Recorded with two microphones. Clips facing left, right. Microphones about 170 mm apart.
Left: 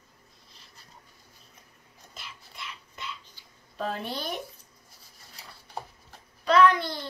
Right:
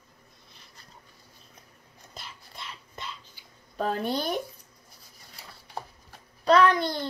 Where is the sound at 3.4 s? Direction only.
10° right (ahead or behind).